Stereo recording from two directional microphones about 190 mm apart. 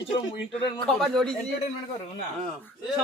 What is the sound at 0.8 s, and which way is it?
Speech, centre (ahead or behind).